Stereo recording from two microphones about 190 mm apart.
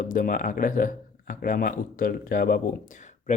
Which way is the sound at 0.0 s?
45° left (ahead or behind).